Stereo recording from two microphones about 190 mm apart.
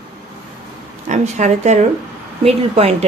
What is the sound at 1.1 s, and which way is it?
Speech, 40° right (ahead or behind).